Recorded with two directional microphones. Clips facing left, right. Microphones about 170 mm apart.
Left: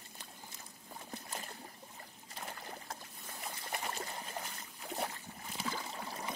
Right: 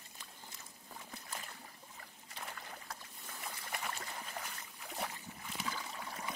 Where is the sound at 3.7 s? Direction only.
35° left (ahead or behind).